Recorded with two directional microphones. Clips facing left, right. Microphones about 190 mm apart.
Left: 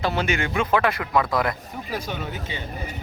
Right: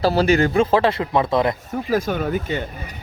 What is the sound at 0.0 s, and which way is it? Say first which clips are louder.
Speech: right 8 dB; 35° right (ahead or behind).